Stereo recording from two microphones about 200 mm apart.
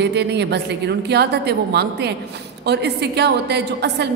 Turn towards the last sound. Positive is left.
turn(degrees=-55)  # may be behind; listen again after turning